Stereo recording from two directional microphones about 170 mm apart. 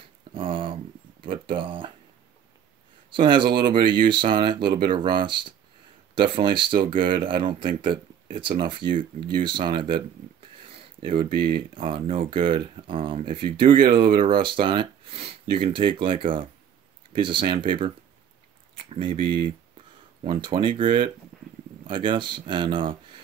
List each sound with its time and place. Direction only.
0.3 s a sound: 30° right (ahead or behind)
1.2 s speech: 30° right (ahead or behind)
3.1 s speech: 30° right (ahead or behind)
11.5 s speech: 30° right (ahead or behind)